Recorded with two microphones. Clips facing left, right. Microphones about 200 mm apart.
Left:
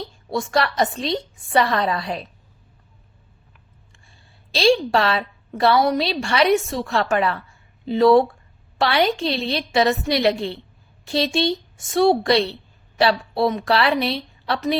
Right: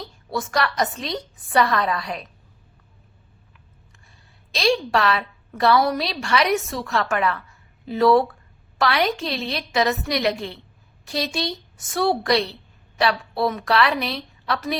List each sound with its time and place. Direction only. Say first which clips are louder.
0.3 s a woman's voice: left 3 dB; 25° left (ahead or behind)
4.5 s a woman's voice: left 4 dB; 30° left (ahead or behind)